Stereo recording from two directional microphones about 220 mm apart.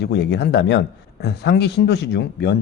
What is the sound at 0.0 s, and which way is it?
Speech, 50° left (ahead or behind).